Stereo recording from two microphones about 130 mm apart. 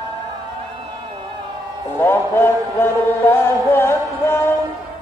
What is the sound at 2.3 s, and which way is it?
Music, 15° left (ahead or behind).